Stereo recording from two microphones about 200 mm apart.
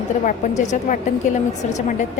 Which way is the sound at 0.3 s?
35° left (ahead or behind).